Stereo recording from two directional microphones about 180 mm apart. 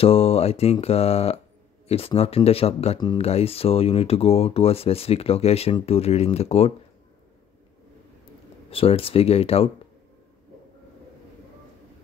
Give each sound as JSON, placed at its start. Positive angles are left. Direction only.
{"t": 0.0, "sound": "speech", "side_deg": 30}
{"t": 8.6, "sound": "speech", "side_deg": 30}